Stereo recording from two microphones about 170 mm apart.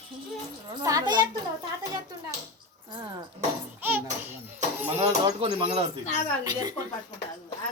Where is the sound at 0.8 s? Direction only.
25° right (ahead or behind).